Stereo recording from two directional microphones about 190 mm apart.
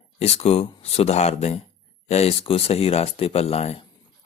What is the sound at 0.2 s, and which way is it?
Speech, 35° left (ahead or behind).